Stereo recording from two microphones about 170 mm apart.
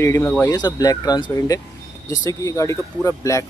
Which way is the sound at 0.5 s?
25° left (ahead or behind).